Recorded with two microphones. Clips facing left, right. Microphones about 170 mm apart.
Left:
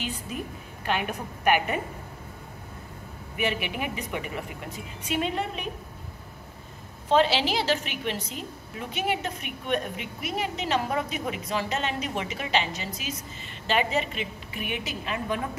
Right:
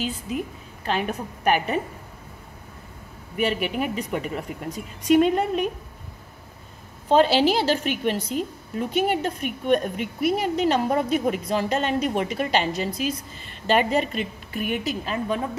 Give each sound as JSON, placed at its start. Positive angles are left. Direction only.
{"t": 0.8, "sound": "a woman's voice", "side_deg": -35}
{"t": 3.3, "sound": "a woman's voice", "side_deg": -40}
{"t": 7.1, "sound": "a woman's voice", "side_deg": -45}